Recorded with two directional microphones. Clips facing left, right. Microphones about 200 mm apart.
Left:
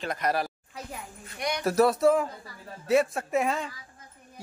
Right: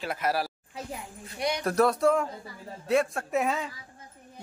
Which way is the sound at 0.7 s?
25° right (ahead or behind).